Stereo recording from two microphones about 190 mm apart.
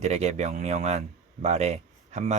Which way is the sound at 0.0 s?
35° right (ahead or behind).